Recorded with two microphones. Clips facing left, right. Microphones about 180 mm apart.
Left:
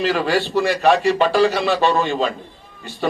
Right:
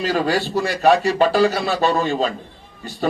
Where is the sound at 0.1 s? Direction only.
40° right (ahead or behind).